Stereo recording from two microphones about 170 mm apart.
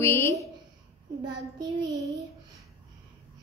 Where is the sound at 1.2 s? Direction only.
25° right (ahead or behind).